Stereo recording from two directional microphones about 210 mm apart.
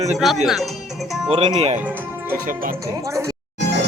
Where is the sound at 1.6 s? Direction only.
30° right (ahead or behind).